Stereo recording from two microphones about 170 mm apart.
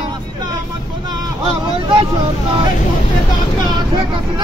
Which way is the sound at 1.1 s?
30° right (ahead or behind).